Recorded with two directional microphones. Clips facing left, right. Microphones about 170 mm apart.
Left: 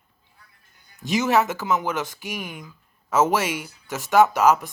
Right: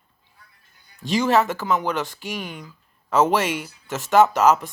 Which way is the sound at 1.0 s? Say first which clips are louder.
Right 1 dB; 15° left (ahead or behind).